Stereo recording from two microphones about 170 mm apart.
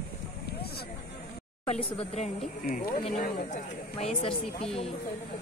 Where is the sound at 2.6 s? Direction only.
60° left (ahead or behind).